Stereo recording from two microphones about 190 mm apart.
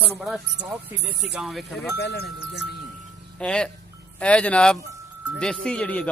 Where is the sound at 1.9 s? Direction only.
60° left (ahead or behind).